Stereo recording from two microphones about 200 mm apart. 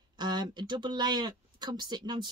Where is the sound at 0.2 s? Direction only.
20° right (ahead or behind).